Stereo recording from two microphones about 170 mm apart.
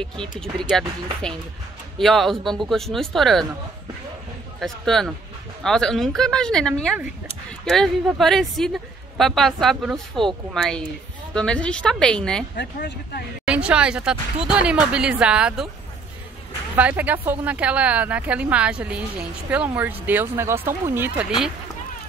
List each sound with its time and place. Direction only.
0.4 s speech: 5° left (ahead or behind)
2.0 s speech: centre (ahead or behind)
4.6 s speech: centre (ahead or behind)
12.5 s speech: 80° left
13.5 s speech: 5° right (ahead or behind)
16.7 s speech: 10° right (ahead or behind)